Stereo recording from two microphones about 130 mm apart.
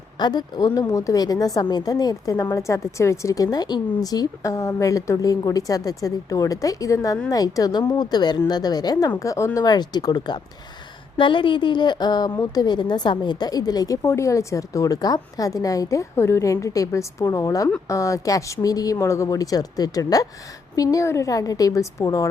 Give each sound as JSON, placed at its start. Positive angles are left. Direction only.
{"t": 0.2, "sound": "a woman's voice", "side_deg": 35}